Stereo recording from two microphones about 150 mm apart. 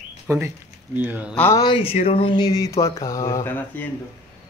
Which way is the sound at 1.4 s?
20° left (ahead or behind).